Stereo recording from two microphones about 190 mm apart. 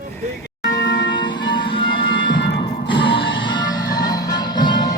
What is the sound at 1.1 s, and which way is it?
Music, 25° left (ahead or behind).